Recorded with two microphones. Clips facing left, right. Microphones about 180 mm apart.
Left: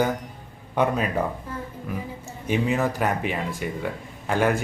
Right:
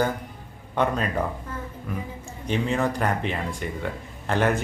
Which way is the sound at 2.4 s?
5° left (ahead or behind).